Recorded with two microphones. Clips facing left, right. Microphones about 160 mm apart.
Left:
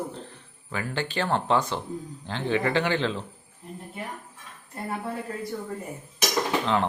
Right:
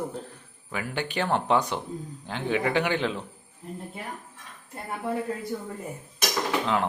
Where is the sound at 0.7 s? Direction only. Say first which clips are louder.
Even; 15° right (ahead or behind).